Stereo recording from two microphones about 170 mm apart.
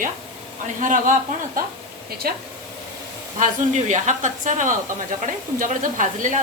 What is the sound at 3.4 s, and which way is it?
Speech, 45° right (ahead or behind).